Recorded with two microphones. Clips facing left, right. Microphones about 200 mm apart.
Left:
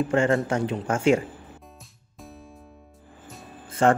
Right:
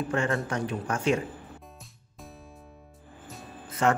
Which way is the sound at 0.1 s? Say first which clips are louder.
Left 5 dB; 30° left (ahead or behind).